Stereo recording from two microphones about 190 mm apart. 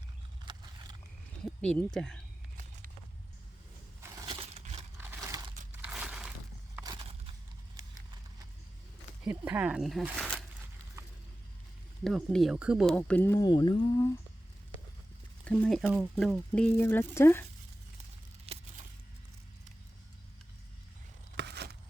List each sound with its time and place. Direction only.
0.4 s vehicle: 20° right (ahead or behind)
1.6 s speech: 5° left (ahead or behind)
4.3 s a sound: 30° right (ahead or behind)
4.9 s crumpling: 15° right (ahead or behind)
5.8 s crushing: 5° right (ahead or behind)
9.2 s speech: 10° right (ahead or behind)
12.0 s speech: centre (ahead or behind); by 14.2 s 15° left (ahead or behind)
15.4 s speech: 5° left (ahead or behind)
18.5 s a sound: 30° right (ahead or behind)
21.3 s a sound: 60° right (ahead or behind)